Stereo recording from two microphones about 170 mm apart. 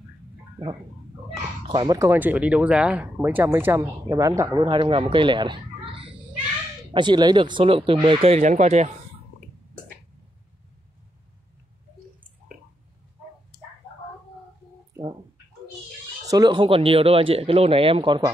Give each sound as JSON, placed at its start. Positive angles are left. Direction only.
{"t": 1.7, "sound": "speech", "side_deg": -25}
{"t": 16.3, "sound": "speech", "side_deg": -25}